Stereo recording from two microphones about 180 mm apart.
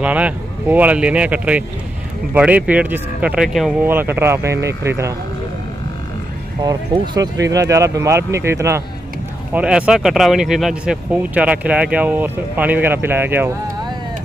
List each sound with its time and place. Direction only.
0.0 s speech: 10° right (ahead or behind)
6.6 s speech: 20° right (ahead or behind)